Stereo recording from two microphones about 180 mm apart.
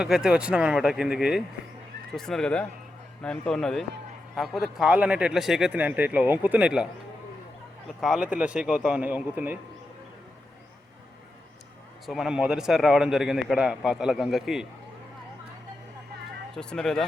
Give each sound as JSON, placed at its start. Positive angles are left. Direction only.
{"t": 0.0, "sound": "a man's voice", "side_deg": -5}
{"t": 8.0, "sound": "speech", "side_deg": -5}
{"t": 12.0, "sound": "a man's voice", "side_deg": 0}
{"t": 16.6, "sound": "a man's voice", "side_deg": 5}